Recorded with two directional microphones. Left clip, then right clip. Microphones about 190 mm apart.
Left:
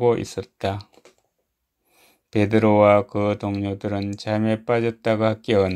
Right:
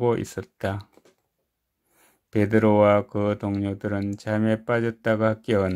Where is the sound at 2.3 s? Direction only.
20° right (ahead or behind).